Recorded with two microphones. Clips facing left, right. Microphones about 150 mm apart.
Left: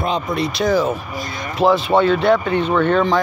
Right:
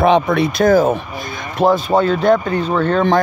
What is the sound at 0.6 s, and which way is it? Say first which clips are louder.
Speech: right 5 dB; 50° right (ahead or behind).